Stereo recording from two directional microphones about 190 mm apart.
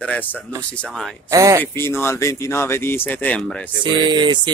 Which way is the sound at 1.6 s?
15° left (ahead or behind).